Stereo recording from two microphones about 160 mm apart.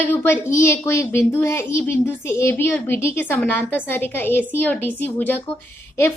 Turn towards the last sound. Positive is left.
turn(degrees=15)  # may be behind; listen again after turning